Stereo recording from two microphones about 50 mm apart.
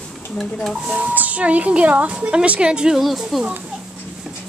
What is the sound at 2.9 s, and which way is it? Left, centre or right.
Speech, centre.